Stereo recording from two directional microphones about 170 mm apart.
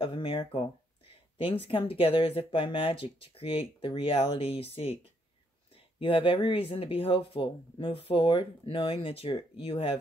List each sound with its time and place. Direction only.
0.0 s speech: 30° left (ahead or behind)